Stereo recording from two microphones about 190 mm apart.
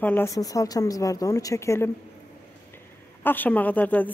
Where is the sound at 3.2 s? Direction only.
10° left (ahead or behind).